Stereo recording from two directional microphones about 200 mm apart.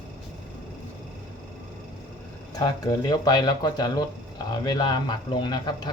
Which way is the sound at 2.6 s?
20° left (ahead or behind).